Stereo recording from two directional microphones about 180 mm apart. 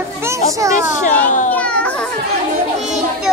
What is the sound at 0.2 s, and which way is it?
Speech, 15° right (ahead or behind).